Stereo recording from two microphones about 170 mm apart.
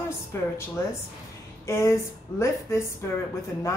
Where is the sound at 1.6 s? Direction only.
15° left (ahead or behind).